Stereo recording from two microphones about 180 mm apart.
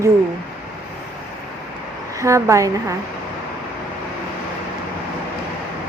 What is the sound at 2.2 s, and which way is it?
Speech, 15° right (ahead or behind).